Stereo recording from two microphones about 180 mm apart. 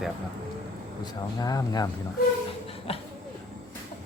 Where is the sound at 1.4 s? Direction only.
20° left (ahead or behind).